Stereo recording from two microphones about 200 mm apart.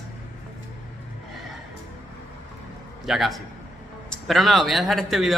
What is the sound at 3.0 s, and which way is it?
Speech, centre (ahead or behind).